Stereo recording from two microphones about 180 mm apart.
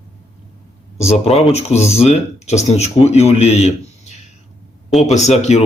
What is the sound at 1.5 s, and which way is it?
Speech, 40° left (ahead or behind).